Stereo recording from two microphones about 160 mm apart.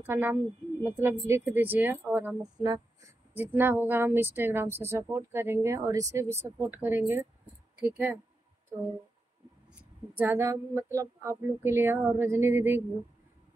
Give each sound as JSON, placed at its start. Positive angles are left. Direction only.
{"t": 0.0, "sound": "a woman's voice", "side_deg": -10}
{"t": 2.4, "sound": "speech", "side_deg": -25}
{"t": 3.3, "sound": "a woman's voice", "side_deg": -15}
{"t": 10.1, "sound": "a woman's voice", "side_deg": -15}